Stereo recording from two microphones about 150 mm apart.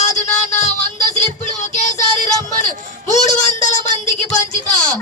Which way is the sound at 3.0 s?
55° left (ahead or behind).